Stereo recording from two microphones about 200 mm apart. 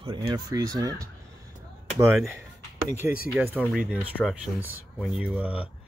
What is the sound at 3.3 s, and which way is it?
Speech, 10° right (ahead or behind).